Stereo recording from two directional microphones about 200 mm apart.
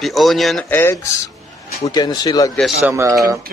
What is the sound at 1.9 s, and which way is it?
Speech, 20° left (ahead or behind).